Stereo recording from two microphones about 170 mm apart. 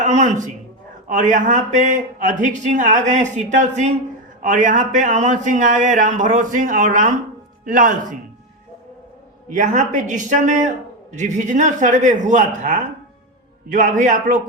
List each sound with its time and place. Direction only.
0.0 s a sound: 45° right (ahead or behind)
1.0 s a man's voice: 50° right (ahead or behind)
9.6 s a man's voice: 50° right (ahead or behind)